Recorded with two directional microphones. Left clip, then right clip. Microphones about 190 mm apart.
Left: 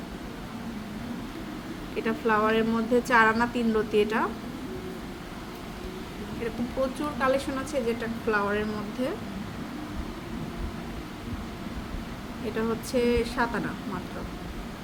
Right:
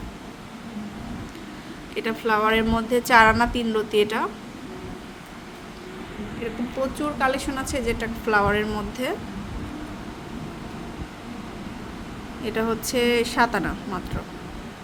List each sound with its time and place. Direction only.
2.0 s a woman's voice: 30° right (ahead or behind)
7.2 s a woman's voice: 20° right (ahead or behind); by 9.1 s 40° right (ahead or behind)
12.5 s a woman's voice: 40° right (ahead or behind)